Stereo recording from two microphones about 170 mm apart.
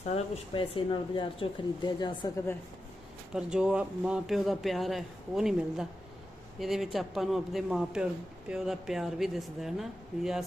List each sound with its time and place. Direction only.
0.1 s speech: 35° left (ahead or behind)
3.3 s speech: 5° right (ahead or behind)